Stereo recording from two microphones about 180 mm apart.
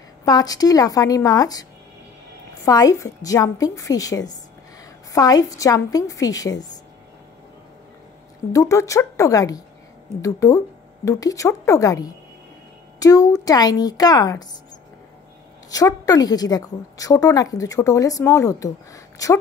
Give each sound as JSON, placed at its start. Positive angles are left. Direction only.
{"t": 0.2, "sound": "a woman's voice", "side_deg": 20}
{"t": 8.5, "sound": "a woman's voice", "side_deg": 15}
{"t": 15.7, "sound": "a woman's voice", "side_deg": 20}